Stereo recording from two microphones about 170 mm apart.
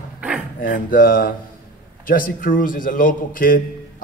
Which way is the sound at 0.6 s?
55° left (ahead or behind).